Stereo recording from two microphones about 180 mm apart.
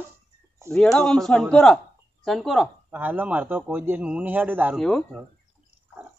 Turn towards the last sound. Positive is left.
turn(degrees=5)  # may be behind; listen again after turning